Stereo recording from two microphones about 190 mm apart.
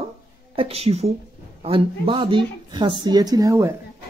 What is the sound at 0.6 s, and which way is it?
A woman's voice, 30° right (ahead or behind).